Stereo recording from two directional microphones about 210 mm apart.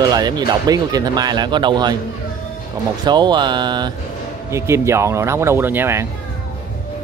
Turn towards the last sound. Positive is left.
turn(degrees=-10)  # may be behind; listen again after turning